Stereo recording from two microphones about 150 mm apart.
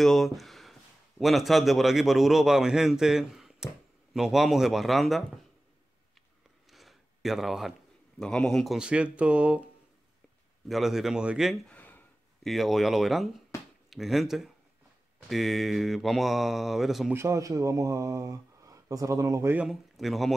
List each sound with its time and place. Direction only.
0.0 s a man's voice: centre (ahead or behind)
6.7 s a sound: centre (ahead or behind)
8.2 s speech: 5° left (ahead or behind)
10.7 s a man's voice: centre (ahead or behind)
11.7 s a sound: 10° left (ahead or behind)
12.4 s a man's voice: centre (ahead or behind)
17.1 s speech: 20° right (ahead or behind)
19.5 s a man's voice: 5° right (ahead or behind)